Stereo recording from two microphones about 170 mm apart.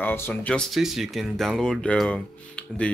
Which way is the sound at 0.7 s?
Centre (ahead or behind).